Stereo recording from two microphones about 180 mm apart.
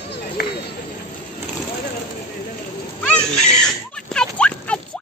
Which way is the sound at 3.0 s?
5° left (ahead or behind).